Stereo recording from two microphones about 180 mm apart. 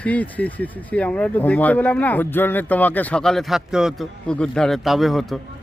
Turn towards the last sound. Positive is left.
turn(degrees=0)  # may be behind; listen again after turning